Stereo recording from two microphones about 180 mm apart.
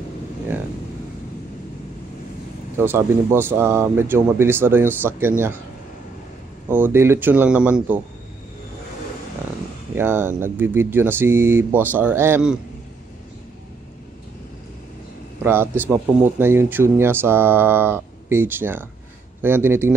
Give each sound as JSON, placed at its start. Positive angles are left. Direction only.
{"t": 2.8, "sound": "speech", "side_deg": -15}
{"t": 6.7, "sound": "speech", "side_deg": -10}
{"t": 9.9, "sound": "speech", "side_deg": -10}
{"t": 15.4, "sound": "speech", "side_deg": -10}